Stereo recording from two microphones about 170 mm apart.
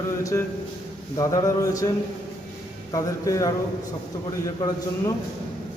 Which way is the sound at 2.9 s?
20° left (ahead or behind).